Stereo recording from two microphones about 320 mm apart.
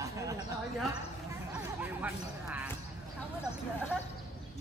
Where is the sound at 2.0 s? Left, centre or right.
Centre.